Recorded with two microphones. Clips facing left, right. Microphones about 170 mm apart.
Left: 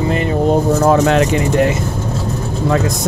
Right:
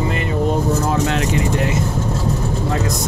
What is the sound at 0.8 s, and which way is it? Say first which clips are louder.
Speech: left 7 dB; 65° left (ahead or behind).